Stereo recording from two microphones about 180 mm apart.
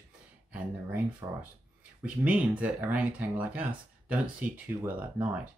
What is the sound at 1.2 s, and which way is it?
Speech, 20° right (ahead or behind).